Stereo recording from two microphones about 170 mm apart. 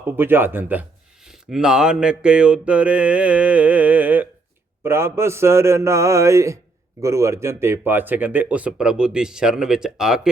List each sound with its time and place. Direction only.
0.2 s speech: 10° right (ahead or behind)